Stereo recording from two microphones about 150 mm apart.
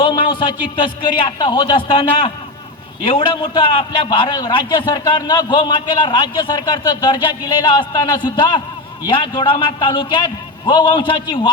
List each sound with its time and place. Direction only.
0.0 s a man's voice: 30° left (ahead or behind)